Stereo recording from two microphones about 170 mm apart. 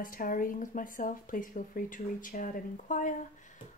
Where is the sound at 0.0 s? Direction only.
55° left (ahead or behind).